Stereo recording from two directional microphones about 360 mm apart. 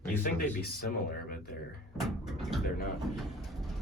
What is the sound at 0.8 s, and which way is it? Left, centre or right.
Speech, left.